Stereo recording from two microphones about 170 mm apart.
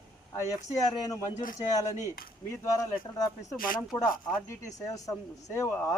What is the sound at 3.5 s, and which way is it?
Speech, 55° left (ahead or behind).